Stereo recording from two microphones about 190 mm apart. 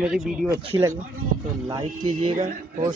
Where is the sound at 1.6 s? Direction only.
20° right (ahead or behind).